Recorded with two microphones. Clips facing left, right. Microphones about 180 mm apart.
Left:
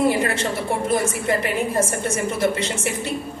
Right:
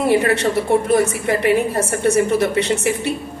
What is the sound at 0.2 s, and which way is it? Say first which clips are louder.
A woman's voice: right 5 dB; 65° right (ahead or behind).